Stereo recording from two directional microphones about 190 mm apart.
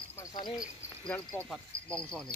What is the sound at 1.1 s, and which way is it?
Speech, 5° left (ahead or behind).